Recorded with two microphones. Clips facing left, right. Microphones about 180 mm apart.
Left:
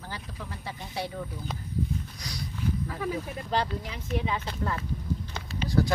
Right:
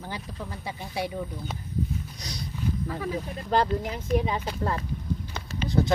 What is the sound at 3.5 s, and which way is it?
Speech, 45° right (ahead or behind).